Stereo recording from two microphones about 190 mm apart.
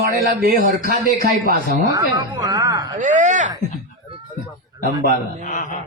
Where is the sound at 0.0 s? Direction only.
55° right (ahead or behind).